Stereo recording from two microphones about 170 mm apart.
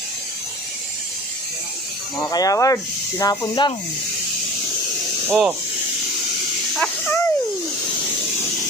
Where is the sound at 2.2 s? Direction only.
20° left (ahead or behind).